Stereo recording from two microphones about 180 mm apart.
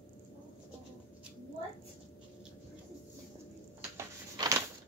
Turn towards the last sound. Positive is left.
turn(degrees=-20)  # may be behind; listen again after turning